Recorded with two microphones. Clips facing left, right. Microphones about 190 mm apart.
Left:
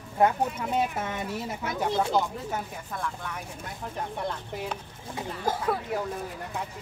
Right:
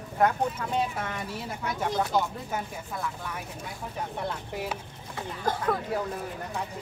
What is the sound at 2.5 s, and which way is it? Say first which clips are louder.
Speech: even; 5° right (ahead or behind).